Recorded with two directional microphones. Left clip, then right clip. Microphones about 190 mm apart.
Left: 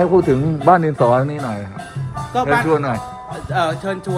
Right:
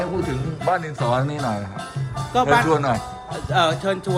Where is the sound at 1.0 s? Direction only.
Centre (ahead or behind).